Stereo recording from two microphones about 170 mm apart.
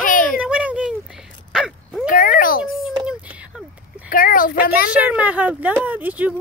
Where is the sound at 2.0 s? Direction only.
55° left (ahead or behind).